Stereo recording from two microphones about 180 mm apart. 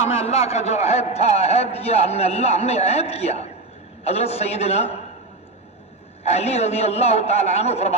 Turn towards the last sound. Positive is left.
turn(degrees=35)  # may be behind; listen again after turning